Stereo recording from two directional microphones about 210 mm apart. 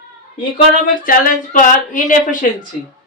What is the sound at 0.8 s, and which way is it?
Speech, 40° left (ahead or behind).